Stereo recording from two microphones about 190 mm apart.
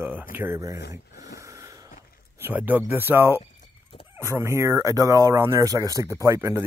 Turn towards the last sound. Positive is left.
turn(degrees=-15)  # may be behind; listen again after turning